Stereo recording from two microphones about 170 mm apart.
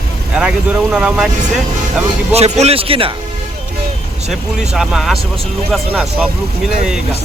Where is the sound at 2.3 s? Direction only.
40° right (ahead or behind).